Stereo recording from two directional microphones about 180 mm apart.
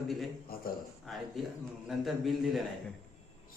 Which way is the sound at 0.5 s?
55° left (ahead or behind).